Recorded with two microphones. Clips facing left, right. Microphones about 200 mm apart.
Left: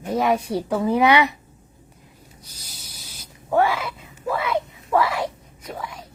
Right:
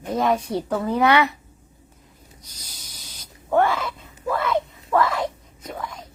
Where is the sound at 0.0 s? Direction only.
10° left (ahead or behind).